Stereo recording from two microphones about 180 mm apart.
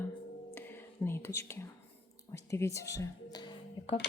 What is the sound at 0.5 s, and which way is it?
Whispering, 10° left (ahead or behind).